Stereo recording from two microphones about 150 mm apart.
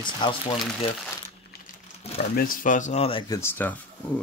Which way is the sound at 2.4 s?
65° left (ahead or behind).